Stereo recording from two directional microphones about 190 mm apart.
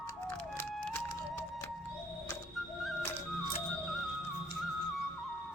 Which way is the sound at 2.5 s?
Centre (ahead or behind).